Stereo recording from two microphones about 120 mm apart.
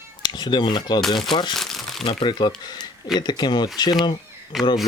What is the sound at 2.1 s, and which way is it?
Speech, 40° left (ahead or behind).